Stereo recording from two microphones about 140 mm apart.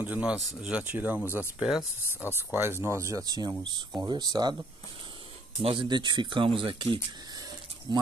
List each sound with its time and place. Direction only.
0.0 s speech: 10° right (ahead or behind); by 4.6 s 30° right (ahead or behind)
5.6 s speech: 40° right (ahead or behind)